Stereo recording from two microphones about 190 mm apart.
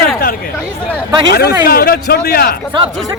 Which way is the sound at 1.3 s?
55° left (ahead or behind).